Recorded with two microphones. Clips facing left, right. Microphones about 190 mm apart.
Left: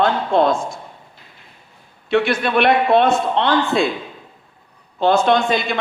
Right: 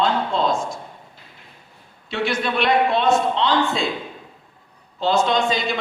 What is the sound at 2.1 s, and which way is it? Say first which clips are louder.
A man's voice: left 6 dB; 60° left (ahead or behind).